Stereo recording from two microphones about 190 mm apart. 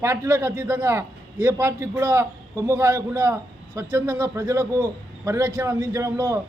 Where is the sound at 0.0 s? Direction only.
15° right (ahead or behind).